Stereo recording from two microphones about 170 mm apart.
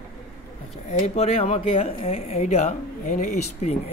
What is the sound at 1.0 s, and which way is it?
Speech, 40° left (ahead or behind).